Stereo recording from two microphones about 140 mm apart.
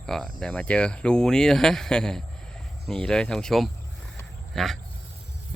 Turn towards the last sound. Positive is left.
turn(degrees=0)  # may be behind; listen again after turning